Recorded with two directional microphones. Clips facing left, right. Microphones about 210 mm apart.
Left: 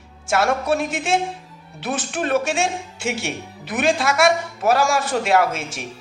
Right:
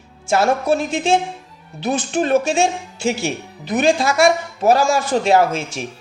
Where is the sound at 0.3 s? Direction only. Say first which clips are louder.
Right 3 dB; 25° right (ahead or behind).